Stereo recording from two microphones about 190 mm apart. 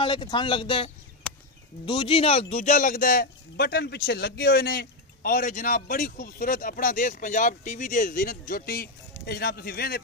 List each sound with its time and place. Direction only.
0.0 s speech: 25° left (ahead or behind); by 9.9 s 55° left (ahead or behind)